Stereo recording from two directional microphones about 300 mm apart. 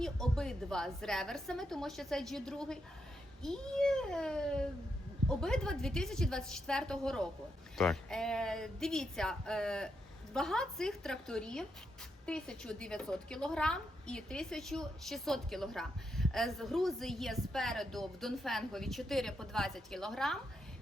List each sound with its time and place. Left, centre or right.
0.0 s a woman's voice: centre